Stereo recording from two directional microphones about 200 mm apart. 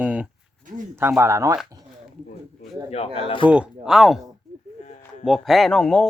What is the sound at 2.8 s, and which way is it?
Speech, 30° left (ahead or behind).